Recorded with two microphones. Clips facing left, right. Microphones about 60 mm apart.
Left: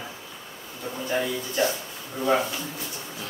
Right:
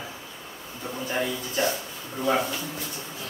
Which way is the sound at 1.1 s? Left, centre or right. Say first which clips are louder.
Left 2 dB; centre.